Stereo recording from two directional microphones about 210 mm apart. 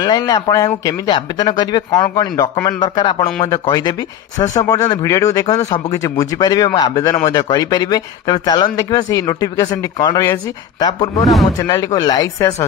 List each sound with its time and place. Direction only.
0.0 s speech: 20° left (ahead or behind)